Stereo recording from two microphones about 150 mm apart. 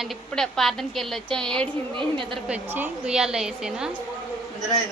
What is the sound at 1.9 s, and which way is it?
Speech, 35° right (ahead or behind).